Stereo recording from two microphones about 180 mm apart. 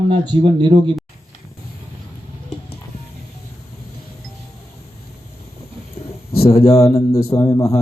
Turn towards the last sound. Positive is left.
turn(degrees=15)  # may be behind; listen again after turning